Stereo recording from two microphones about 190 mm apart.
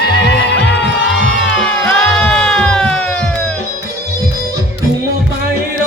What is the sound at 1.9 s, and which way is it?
Sheep, 5° left (ahead or behind).